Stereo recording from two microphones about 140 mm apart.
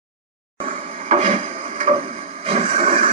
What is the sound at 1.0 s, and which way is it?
Wood, 50° right (ahead or behind).